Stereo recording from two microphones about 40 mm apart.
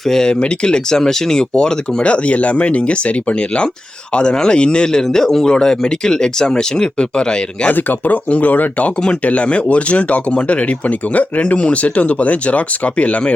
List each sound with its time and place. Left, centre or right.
0.1 s speech: centre
2.0 s speech: left
5.0 s speech: centre
7.7 s speech: left
9.2 s speech: left